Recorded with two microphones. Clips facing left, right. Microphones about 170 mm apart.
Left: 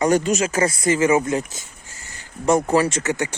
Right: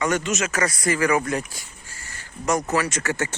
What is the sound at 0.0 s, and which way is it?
Speech, 35° left (ahead or behind).